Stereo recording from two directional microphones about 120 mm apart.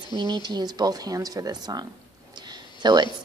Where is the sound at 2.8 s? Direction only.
35° right (ahead or behind).